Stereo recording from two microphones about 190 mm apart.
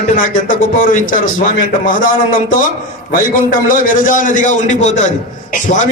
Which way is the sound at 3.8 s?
45° left (ahead or behind).